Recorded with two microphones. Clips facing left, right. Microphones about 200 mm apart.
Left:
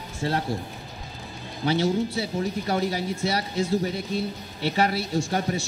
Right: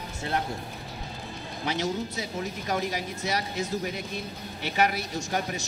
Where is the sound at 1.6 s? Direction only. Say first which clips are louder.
Left 6 dB; 30° left (ahead or behind).